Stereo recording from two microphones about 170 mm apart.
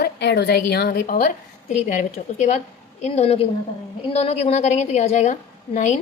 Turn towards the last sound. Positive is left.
turn(degrees=45)  # may be behind; listen again after turning